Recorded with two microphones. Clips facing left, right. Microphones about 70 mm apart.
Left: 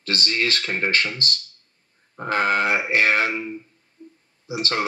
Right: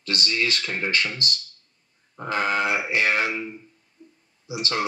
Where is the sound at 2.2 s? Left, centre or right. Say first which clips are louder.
Left 3 dB; left.